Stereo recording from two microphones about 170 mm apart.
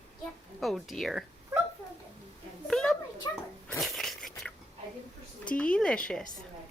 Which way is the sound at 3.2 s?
25° left (ahead or behind).